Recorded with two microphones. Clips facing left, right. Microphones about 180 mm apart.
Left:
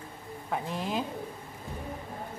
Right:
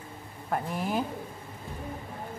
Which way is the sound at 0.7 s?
25° left (ahead or behind).